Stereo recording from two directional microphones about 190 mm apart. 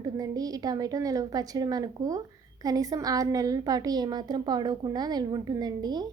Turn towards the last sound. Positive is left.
turn(degrees=-20)  # may be behind; listen again after turning